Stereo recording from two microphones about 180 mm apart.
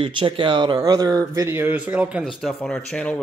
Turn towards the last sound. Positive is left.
turn(degrees=5)  # may be behind; listen again after turning